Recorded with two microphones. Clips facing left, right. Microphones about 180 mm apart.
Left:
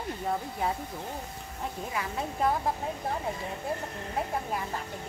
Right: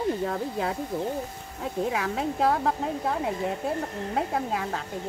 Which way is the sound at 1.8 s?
85° right.